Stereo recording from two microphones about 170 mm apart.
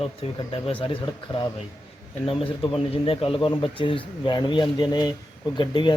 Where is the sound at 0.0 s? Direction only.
35° left (ahead or behind).